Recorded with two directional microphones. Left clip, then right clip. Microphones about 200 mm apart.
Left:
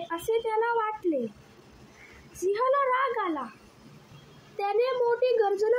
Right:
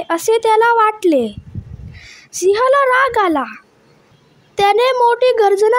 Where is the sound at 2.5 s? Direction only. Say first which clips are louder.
Right 12 dB; 55° right (ahead or behind).